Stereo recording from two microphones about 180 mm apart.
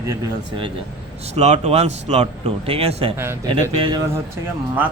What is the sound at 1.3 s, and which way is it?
Speech, 40° right (ahead or behind).